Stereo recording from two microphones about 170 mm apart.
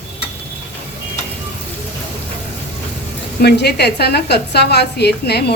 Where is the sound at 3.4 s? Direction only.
75° left (ahead or behind).